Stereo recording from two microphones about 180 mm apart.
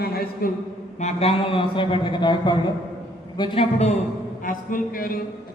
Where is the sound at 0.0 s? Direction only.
60° left (ahead or behind).